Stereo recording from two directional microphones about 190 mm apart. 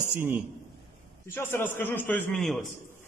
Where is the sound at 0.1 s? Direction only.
10° right (ahead or behind).